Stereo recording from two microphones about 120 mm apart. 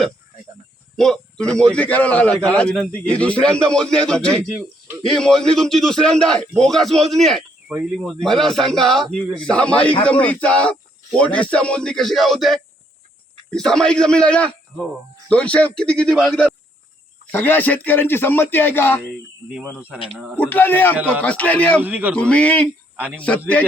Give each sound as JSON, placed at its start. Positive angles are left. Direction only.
{"t": 0.9, "sound": "a man's voice", "side_deg": 5}
{"t": 17.3, "sound": "speech", "side_deg": 15}
{"t": 20.1, "sound": "a man's voice", "side_deg": -15}
{"t": 20.4, "sound": "speech", "side_deg": 15}
{"t": 21.8, "sound": "a man's voice", "side_deg": -15}
{"t": 22.1, "sound": "speech", "side_deg": 10}